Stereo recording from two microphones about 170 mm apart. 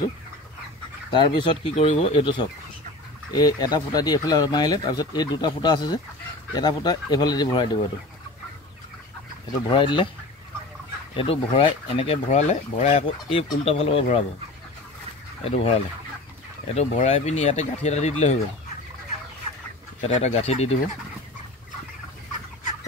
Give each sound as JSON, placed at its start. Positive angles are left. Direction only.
{"t": 1.1, "sound": "speech", "side_deg": 30}
{"t": 9.7, "sound": "speech", "side_deg": 30}
{"t": 11.1, "sound": "speech", "side_deg": 30}
{"t": 15.4, "sound": "speech", "side_deg": 35}
{"t": 16.7, "sound": "speech", "side_deg": 40}
{"t": 20.0, "sound": "speech", "side_deg": 40}